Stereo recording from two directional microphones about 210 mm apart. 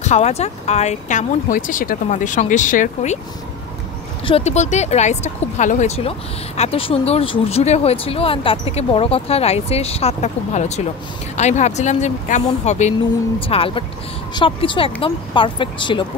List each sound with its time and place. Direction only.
0.0 s speech: 30° left (ahead or behind)
4.2 s speech: 25° left (ahead or behind)